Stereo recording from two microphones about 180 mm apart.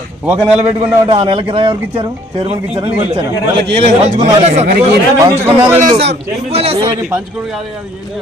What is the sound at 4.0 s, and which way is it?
Speech, 40° right (ahead or behind).